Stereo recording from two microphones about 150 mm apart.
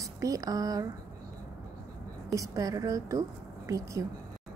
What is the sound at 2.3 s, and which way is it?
A woman's voice, 20° right (ahead or behind).